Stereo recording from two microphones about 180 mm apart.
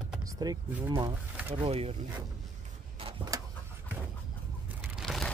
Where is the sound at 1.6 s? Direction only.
35° right (ahead or behind).